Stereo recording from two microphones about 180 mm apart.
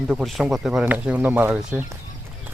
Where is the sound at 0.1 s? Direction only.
Centre (ahead or behind).